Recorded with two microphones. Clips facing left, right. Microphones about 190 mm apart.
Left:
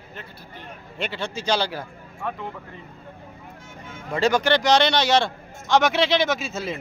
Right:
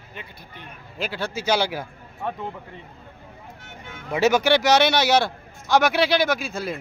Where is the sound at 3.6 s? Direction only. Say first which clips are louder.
Left 1 dB; 65° right (ahead or behind).